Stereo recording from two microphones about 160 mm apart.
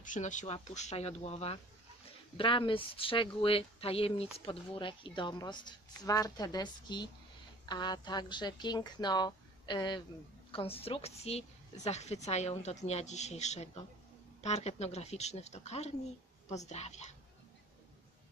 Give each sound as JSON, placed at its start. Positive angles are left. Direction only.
{"t": 0.0, "sound": "a woman's voice", "side_deg": 50}